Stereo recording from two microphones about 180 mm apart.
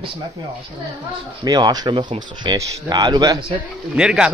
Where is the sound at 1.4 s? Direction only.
20° right (ahead or behind).